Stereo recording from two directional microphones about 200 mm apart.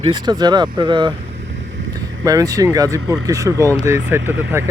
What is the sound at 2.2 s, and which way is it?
Speech, 15° right (ahead or behind).